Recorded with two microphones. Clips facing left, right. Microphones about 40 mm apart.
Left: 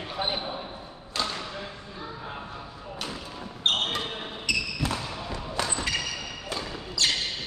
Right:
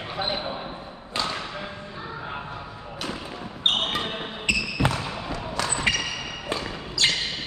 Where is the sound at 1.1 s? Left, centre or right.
Right.